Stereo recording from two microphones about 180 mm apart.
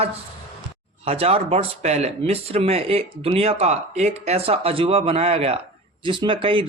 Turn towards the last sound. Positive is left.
turn(degrees=-30)  # may be behind; listen again after turning